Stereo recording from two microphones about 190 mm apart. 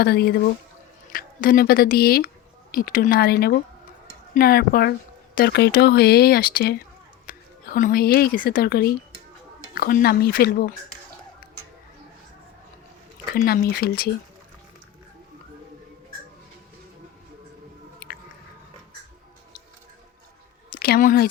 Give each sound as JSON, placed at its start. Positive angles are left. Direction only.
{"t": 0.0, "sound": "speech", "side_deg": 55}
{"t": 13.3, "sound": "speech", "side_deg": 50}
{"t": 20.7, "sound": "speech", "side_deg": 55}